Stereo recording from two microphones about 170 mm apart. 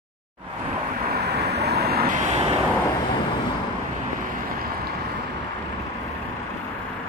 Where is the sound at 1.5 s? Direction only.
75° right (ahead or behind).